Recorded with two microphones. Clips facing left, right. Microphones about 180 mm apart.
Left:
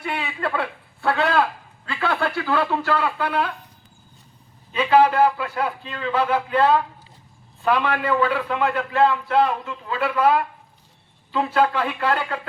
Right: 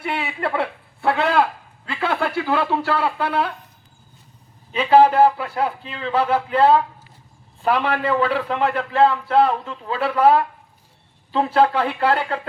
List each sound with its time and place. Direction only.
0.0 s a man's voice: 25° right (ahead or behind)
1.9 s a sound: 25° right (ahead or behind)
3.0 s speech: 30° right (ahead or behind)
4.7 s a man's voice: 30° right (ahead or behind)